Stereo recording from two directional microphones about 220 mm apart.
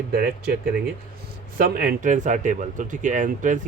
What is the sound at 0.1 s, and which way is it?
A man's voice, 45° right (ahead or behind).